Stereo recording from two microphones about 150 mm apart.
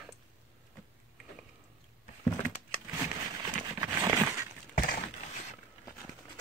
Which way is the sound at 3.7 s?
25° right (ahead or behind).